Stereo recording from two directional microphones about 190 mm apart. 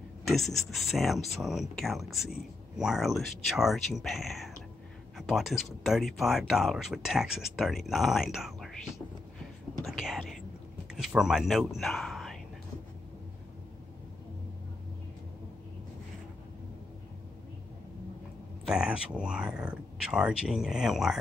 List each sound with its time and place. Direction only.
0.3 s speech: centre (ahead or behind)
9.8 s whispering: centre (ahead or behind)
10.9 s speech: 5° right (ahead or behind)
18.7 s speech: 5° right (ahead or behind)